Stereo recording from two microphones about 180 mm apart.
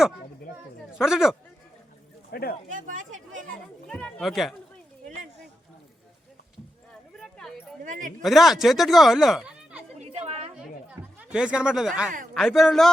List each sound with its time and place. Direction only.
0.9 s speech: 5° right (ahead or behind)
2.3 s speech: 60° left (ahead or behind)
2.6 s speech: 45° right (ahead or behind)
3.8 s speech: 5° left (ahead or behind)
7.2 s a sound: 5° left (ahead or behind)
7.9 s speech: 45° right (ahead or behind)
8.2 s speech: centre (ahead or behind)
10.0 s a sound: 35° right (ahead or behind)
10.6 s a sound: 5° right (ahead or behind)
12.3 s speech: centre (ahead or behind)